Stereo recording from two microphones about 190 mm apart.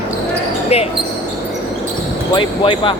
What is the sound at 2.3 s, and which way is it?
Speech, 25° left (ahead or behind).